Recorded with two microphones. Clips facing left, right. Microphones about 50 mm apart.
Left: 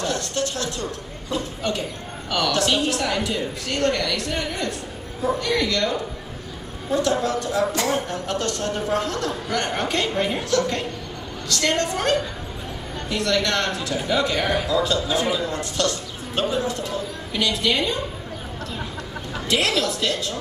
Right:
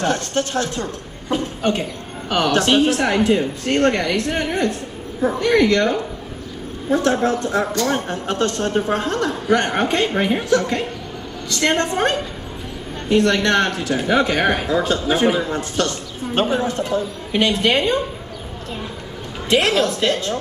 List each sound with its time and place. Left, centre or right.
0.0 s a man's voice: right
19.5 s a man's voice: right